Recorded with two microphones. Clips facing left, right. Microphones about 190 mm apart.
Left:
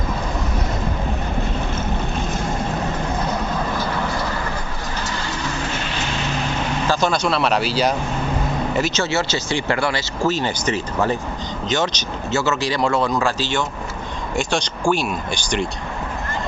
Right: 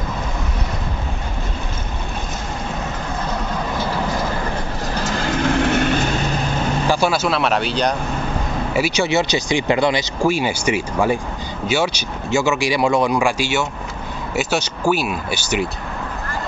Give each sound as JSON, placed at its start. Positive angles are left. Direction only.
{"t": 5.2, "sound": "vehicle", "side_deg": -55}
{"t": 6.9, "sound": "speech", "side_deg": -10}
{"t": 8.7, "sound": "speech", "side_deg": -10}